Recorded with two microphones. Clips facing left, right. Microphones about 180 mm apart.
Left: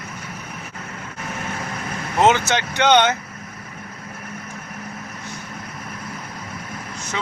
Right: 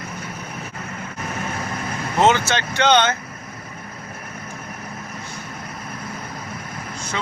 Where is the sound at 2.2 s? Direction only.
15° left (ahead or behind).